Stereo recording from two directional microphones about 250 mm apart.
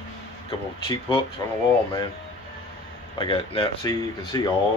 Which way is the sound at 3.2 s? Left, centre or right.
Centre.